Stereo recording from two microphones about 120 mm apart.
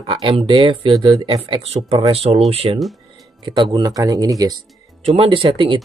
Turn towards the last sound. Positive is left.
turn(degrees=-50)  # may be behind; listen again after turning